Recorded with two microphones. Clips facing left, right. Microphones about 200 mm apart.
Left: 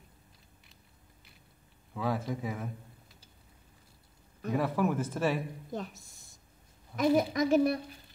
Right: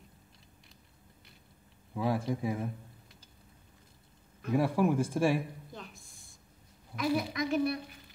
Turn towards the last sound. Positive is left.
turn(degrees=45)  # may be behind; listen again after turning